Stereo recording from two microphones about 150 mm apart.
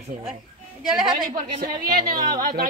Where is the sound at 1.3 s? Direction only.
65° right (ahead or behind).